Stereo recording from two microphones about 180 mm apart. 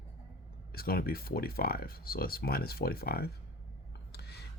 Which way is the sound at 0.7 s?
55° left (ahead or behind).